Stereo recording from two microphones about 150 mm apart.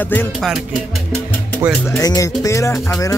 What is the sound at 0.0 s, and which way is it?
Music, 10° left (ahead or behind).